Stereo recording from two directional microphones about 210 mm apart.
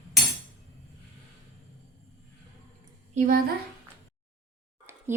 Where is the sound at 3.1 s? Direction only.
40° right (ahead or behind).